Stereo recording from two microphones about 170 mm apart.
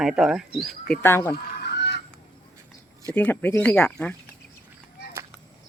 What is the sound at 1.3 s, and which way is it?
Fowl, 75° left (ahead or behind).